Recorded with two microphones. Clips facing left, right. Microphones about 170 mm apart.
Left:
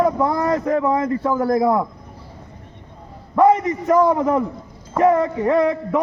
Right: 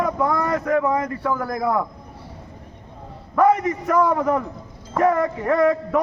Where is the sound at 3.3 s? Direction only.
25° left (ahead or behind).